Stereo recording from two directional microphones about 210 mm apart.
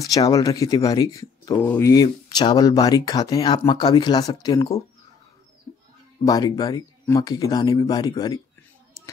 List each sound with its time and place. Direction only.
0.0 s speech: 15° left (ahead or behind)
6.2 s speech: 15° left (ahead or behind)